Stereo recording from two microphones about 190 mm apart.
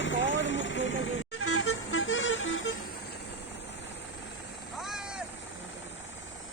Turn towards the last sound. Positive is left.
turn(degrees=-5)  # may be behind; listen again after turning